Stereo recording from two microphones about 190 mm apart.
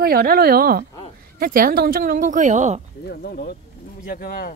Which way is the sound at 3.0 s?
55° left (ahead or behind).